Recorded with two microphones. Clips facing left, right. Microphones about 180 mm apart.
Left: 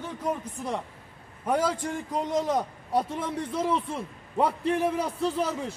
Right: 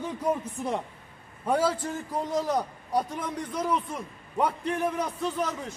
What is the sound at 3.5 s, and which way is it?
Speech, 25° left (ahead or behind).